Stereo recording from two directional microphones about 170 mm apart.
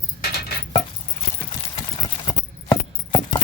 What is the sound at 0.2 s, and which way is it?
Keys jangling, 65° left (ahead or behind).